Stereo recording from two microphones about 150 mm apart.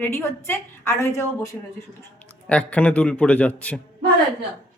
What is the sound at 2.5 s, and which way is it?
A woman's voice, 10° left (ahead or behind).